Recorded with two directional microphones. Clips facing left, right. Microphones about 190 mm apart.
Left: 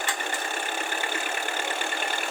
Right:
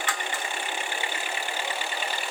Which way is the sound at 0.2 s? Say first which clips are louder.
Left 2 dB; 45° left (ahead or behind).